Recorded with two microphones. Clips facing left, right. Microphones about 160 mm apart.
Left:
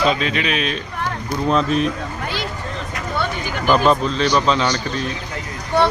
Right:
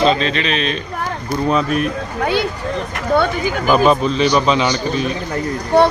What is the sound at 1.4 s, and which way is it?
Speech, 5° right (ahead or behind).